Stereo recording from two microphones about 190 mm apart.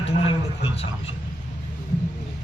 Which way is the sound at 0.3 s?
30° left (ahead or behind).